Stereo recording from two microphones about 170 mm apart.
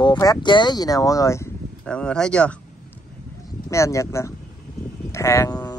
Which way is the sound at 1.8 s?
5° left (ahead or behind).